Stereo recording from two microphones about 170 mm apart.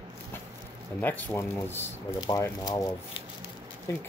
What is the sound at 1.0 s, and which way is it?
Speech, 10° left (ahead or behind).